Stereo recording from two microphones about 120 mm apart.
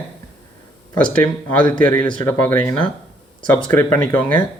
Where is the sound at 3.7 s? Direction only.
15° left (ahead or behind).